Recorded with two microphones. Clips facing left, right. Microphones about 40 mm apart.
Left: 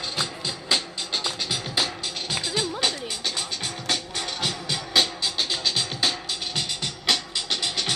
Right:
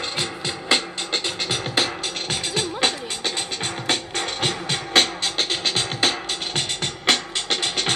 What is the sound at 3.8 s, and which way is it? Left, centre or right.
Music, right.